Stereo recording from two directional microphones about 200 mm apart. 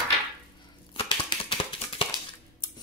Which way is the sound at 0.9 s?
25° left (ahead or behind).